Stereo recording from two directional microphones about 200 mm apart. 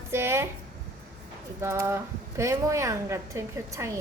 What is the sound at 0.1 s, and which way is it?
Speech, 10° right (ahead or behind).